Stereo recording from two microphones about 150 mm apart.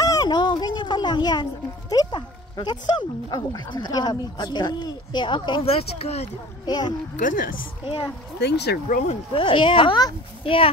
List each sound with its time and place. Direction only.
0.0 s speech: 25° left (ahead or behind); by 6.2 s 45° left (ahead or behind)
6.6 s a child's voice: 25° left (ahead or behind)
7.2 s a woman's voice: 65° left (ahead or behind)
7.8 s speech: 30° left (ahead or behind)
8.4 s speech: 90° left
9.0 s speech: 35° left (ahead or behind)